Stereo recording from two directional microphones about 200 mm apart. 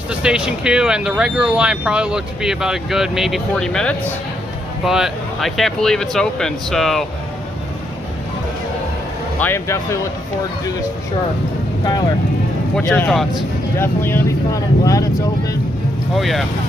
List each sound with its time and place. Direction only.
0.1 s speech: 5° right (ahead or behind)
9.4 s speech: 15° left (ahead or behind)
12.7 s speech: 5° left (ahead or behind)
16.2 s speech: centre (ahead or behind)